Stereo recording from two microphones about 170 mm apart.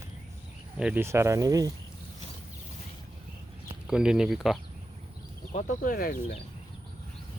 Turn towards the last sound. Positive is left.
turn(degrees=55)  # may be behind; listen again after turning